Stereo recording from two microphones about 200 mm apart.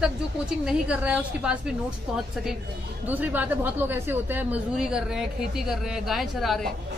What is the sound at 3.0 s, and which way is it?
Speech, 10° right (ahead or behind).